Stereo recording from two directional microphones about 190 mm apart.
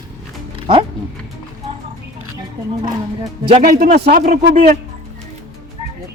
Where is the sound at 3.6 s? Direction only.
50° right (ahead or behind).